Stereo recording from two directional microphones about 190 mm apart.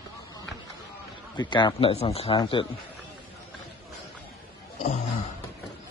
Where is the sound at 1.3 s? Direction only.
25° left (ahead or behind).